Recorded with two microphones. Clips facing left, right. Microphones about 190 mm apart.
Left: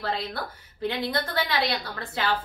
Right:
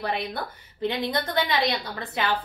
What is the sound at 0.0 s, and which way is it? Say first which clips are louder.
A woman's voice: right 1 dB; 15° right (ahead or behind).